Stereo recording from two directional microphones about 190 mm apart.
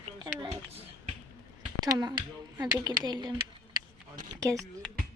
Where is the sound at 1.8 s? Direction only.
20° right (ahead or behind).